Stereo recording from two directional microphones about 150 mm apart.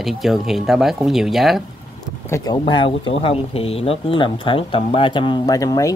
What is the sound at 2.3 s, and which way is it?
Speech, 30° left (ahead or behind).